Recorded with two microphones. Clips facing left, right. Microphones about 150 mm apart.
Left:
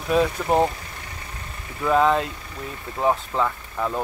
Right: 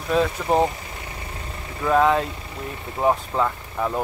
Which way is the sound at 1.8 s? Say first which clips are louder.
Right 1 dB; centre (ahead or behind).